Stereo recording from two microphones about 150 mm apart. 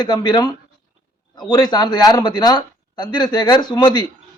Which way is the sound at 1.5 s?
25° left (ahead or behind).